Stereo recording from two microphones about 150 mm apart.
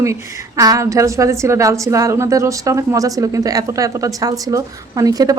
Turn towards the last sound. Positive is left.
turn(degrees=-25)  # may be behind; listen again after turning